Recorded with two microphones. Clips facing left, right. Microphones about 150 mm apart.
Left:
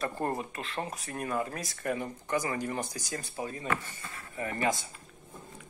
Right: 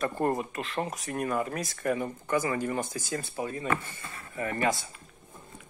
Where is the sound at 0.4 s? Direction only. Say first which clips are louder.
Right 4 dB; 20° right (ahead or behind).